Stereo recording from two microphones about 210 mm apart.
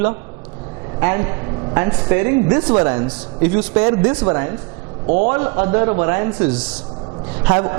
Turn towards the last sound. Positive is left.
turn(degrees=-25)  # may be behind; listen again after turning